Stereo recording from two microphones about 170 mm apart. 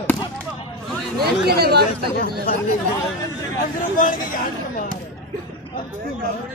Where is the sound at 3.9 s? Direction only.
50° left (ahead or behind).